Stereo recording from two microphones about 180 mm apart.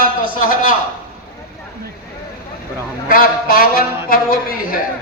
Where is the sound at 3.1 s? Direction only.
55° left (ahead or behind).